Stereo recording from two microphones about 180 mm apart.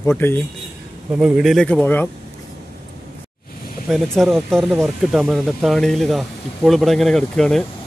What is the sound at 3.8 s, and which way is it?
Speech, centre (ahead or behind).